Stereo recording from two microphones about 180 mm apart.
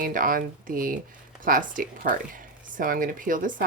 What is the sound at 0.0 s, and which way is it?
Speech, 50° right (ahead or behind).